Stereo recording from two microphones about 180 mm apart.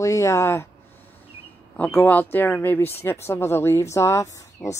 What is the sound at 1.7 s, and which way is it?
Speech, 10° left (ahead or behind).